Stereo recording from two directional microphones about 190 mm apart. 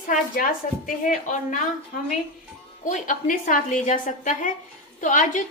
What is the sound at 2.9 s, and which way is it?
A woman's voice, 45° left (ahead or behind).